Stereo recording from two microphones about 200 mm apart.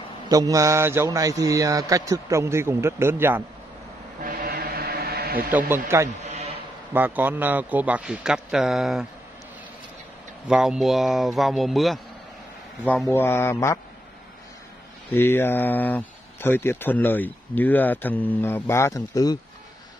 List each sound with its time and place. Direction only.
0.3 s a man's voice: 15° right (ahead or behind)
4.2 s vehicle: 45° right (ahead or behind)
5.7 s a man's voice: 15° right (ahead or behind)
6.2 s sheep: 35° right (ahead or behind)
6.9 s a man's voice: 10° right (ahead or behind)
10.5 s speech: 5° right (ahead or behind)
13.1 s speech: 10° left (ahead or behind)
15.0 s speech: 10° left (ahead or behind)